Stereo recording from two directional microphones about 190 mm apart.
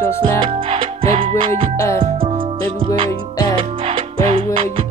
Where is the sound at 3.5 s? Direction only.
30° right (ahead or behind).